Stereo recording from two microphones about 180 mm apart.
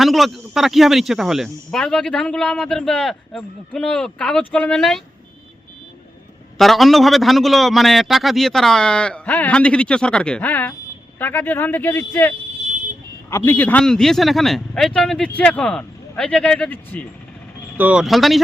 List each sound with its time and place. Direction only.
0.0 s speech: centre (ahead or behind)
6.6 s speech: centre (ahead or behind)
13.3 s speech: 15° left (ahead or behind)
17.7 s speech: 5° right (ahead or behind)